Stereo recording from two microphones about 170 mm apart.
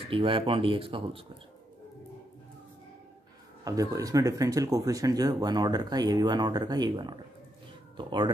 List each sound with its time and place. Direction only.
0.1 s speech: 30° right (ahead or behind)
3.6 s speech: 20° right (ahead or behind)